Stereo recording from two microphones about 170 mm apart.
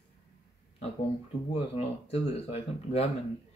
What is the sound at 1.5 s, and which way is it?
Speech, 35° left (ahead or behind).